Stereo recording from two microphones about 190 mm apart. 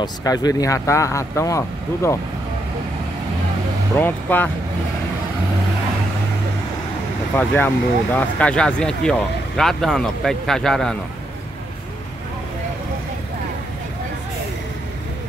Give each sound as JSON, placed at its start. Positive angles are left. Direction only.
{"t": 0.0, "sound": "speech", "side_deg": 20}
{"t": 3.9, "sound": "speech", "side_deg": 10}
{"t": 7.3, "sound": "speech", "side_deg": 10}